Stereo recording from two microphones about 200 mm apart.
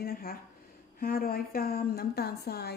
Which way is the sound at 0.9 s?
45° left (ahead or behind).